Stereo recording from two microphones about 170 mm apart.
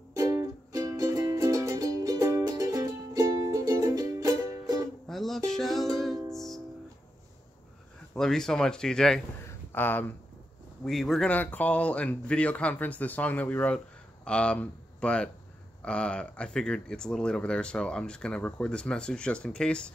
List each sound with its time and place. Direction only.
0.1 s music: 20° right (ahead or behind)
5.0 s music: centre (ahead or behind)
8.1 s speech: 5° left (ahead or behind)
9.5 s a sound: 10° left (ahead or behind)
10.8 s speech: centre (ahead or behind)